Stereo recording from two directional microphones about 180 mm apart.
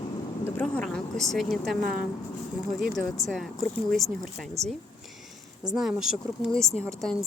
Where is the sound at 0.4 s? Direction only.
10° left (ahead or behind).